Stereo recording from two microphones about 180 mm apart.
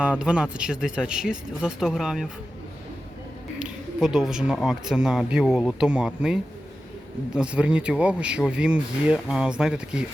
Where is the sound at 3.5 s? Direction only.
5° right (ahead or behind).